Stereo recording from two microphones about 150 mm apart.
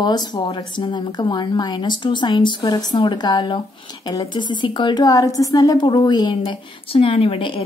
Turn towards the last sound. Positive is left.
turn(degrees=35)  # may be behind; listen again after turning